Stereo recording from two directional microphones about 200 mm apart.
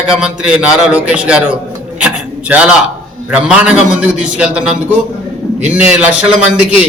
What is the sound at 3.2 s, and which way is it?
A man's voice, 5° right (ahead or behind).